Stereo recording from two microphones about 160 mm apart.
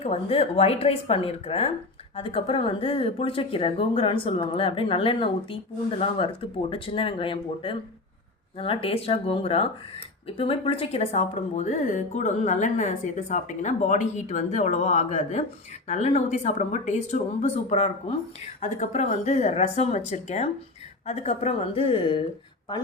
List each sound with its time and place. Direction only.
0.0 s speech: 40° left (ahead or behind)